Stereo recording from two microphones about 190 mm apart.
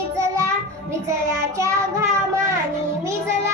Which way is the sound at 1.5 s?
15° right (ahead or behind).